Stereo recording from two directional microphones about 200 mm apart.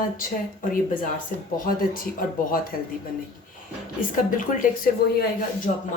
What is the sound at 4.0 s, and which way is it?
A woman's voice, 45° left (ahead or behind).